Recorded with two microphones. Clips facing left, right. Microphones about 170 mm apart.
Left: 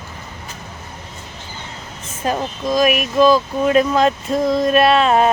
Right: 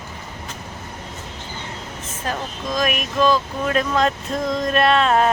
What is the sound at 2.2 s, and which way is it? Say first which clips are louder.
Speech: left 6 dB; 10° left (ahead or behind).